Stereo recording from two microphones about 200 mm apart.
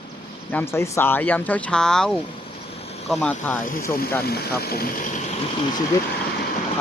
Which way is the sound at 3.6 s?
45° left (ahead or behind).